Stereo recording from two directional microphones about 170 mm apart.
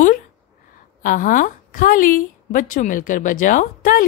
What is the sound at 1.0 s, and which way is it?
A woman's voice, 50° left (ahead or behind).